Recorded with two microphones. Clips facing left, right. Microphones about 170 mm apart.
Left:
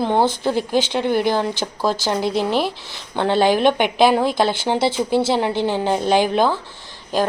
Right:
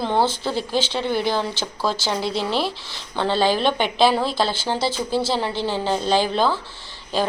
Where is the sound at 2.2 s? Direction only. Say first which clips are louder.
Left 5 dB; 50° left (ahead or behind).